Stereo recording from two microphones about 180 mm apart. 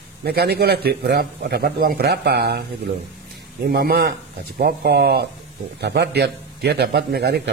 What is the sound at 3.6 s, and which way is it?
A man's voice, 60° right (ahead or behind).